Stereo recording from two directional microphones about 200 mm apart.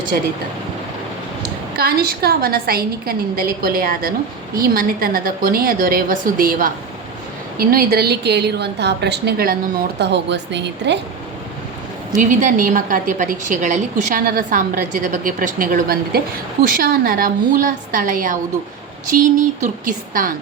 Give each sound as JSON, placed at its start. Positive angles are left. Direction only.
{"t": 1.7, "sound": "a woman's voice", "side_deg": -50}
{"t": 12.1, "sound": "a woman's voice", "side_deg": -40}